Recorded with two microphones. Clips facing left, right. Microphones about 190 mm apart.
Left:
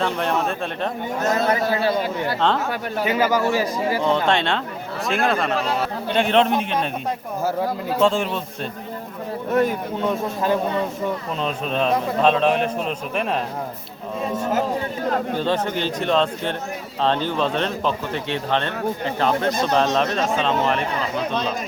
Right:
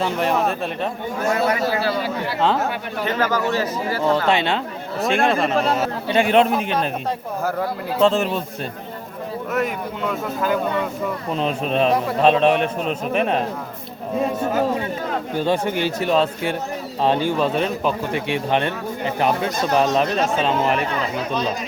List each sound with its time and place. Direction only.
0.0 s a man's voice: 5° right (ahead or behind)
3.0 s speech: 10° left (ahead or behind)
4.3 s a man's voice: 5° right (ahead or behind)
8.0 s a man's voice: centre (ahead or behind)
9.5 s speech: 30° left (ahead or behind)
11.3 s a man's voice: centre (ahead or behind)
15.4 s speech: 10° right (ahead or behind)